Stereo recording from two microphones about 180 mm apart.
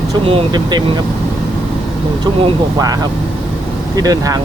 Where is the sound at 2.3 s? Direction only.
25° right (ahead or behind).